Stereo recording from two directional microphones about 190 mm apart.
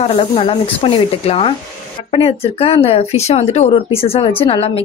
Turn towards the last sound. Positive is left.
turn(degrees=30)  # may be behind; listen again after turning